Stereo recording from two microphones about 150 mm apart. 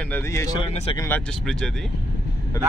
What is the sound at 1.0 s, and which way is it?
Speech, 10° left (ahead or behind).